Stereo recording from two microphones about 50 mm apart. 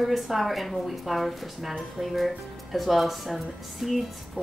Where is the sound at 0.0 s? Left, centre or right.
Centre.